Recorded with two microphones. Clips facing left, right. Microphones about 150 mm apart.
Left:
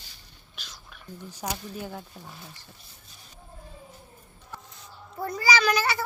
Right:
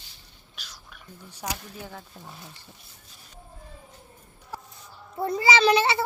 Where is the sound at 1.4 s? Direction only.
5° left (ahead or behind).